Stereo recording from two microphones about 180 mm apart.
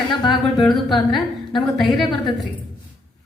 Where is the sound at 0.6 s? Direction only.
Centre (ahead or behind).